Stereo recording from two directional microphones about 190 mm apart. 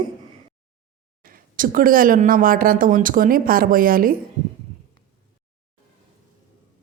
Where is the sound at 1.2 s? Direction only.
45° right (ahead or behind).